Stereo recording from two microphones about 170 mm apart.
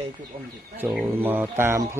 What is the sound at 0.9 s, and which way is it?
Speech, 10° right (ahead or behind).